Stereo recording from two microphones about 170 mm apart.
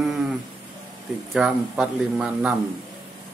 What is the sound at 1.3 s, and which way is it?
Speech, 5° right (ahead or behind).